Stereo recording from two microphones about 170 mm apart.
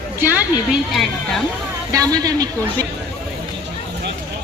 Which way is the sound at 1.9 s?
20° right (ahead or behind).